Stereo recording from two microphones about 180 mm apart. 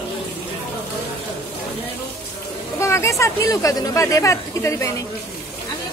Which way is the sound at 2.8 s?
15° left (ahead or behind).